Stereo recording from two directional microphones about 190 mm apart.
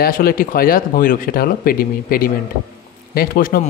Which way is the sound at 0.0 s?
50° left (ahead or behind).